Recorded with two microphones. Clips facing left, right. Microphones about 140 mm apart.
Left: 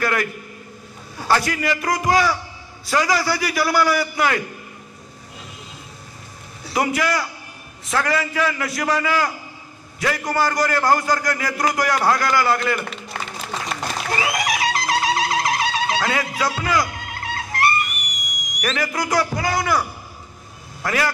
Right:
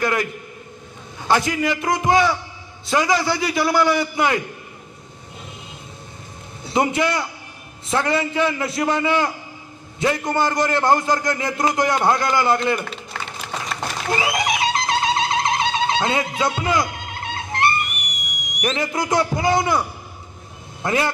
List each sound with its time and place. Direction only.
0.0 s a man's voice: 20° right (ahead or behind)
6.6 s a man's voice: 25° right (ahead or behind)
14.0 s music: 25° right (ahead or behind)
17.9 s whistle: 60° right (ahead or behind)
18.6 s a man's voice: 25° right (ahead or behind)